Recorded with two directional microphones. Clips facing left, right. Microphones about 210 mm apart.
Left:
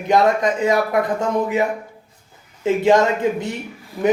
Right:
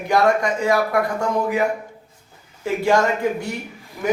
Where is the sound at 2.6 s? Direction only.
20° left (ahead or behind).